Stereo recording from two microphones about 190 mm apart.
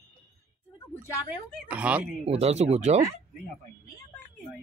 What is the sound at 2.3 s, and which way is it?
Speech, 35° right (ahead or behind).